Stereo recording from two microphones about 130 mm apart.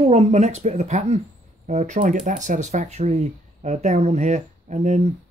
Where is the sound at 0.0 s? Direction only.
55° right (ahead or behind).